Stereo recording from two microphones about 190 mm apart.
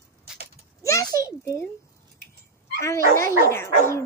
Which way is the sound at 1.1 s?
15° left (ahead or behind).